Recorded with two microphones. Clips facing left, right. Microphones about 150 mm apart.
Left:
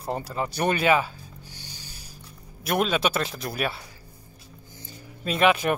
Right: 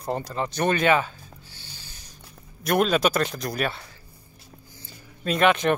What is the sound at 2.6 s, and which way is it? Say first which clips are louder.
Speech: right 3 dB; centre (ahead or behind).